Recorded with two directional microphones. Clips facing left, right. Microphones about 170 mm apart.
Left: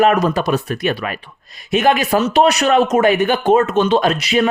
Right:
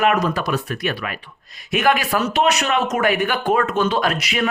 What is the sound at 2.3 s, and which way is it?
Speech, 35° left (ahead or behind).